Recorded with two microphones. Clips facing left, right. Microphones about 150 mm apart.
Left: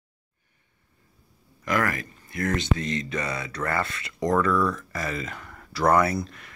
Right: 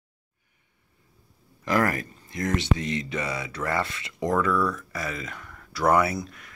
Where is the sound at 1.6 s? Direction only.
35° right (ahead or behind).